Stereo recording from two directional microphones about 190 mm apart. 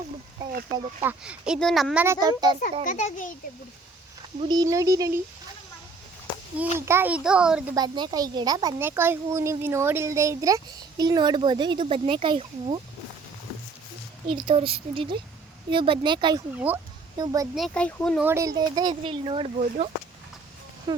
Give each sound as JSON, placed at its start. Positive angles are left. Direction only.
{"t": 1.0, "sound": "speech", "side_deg": -5}
{"t": 2.2, "sound": "a child's voice", "side_deg": -20}
{"t": 2.8, "sound": "a child's voice", "side_deg": 45}
{"t": 4.4, "sound": "a child's voice", "side_deg": -20}
{"t": 6.7, "sound": "a child's voice", "side_deg": -15}
{"t": 7.8, "sound": "a child's voice", "side_deg": -20}
{"t": 14.3, "sound": "a child's voice", "side_deg": -25}
{"t": 16.6, "sound": "a child's voice", "side_deg": -10}
{"t": 17.5, "sound": "speech", "side_deg": 5}
{"t": 18.2, "sound": "a child's voice", "side_deg": -15}
{"t": 20.9, "sound": "a child's voice", "side_deg": -20}